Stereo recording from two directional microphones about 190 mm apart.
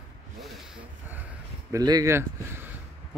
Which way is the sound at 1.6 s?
20° right (ahead or behind).